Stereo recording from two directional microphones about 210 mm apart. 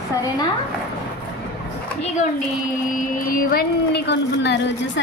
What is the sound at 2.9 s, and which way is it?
A woman's voice, 40° left (ahead or behind).